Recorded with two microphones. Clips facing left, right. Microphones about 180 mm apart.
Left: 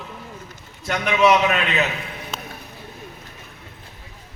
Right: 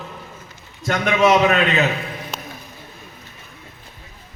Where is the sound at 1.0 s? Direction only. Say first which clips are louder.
Right 2 dB; 40° right (ahead or behind).